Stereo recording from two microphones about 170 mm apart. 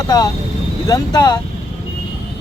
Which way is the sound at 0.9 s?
25° left (ahead or behind).